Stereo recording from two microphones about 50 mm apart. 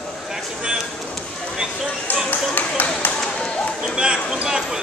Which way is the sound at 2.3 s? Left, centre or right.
Left.